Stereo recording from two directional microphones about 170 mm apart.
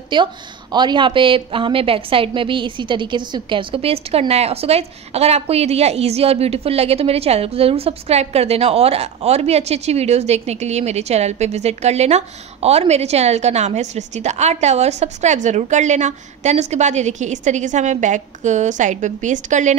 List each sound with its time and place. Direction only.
0.1 s speech: 25° right (ahead or behind); by 19.7 s 45° right (ahead or behind)